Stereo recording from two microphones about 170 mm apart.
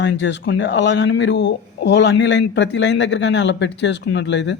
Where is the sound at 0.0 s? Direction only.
90° left.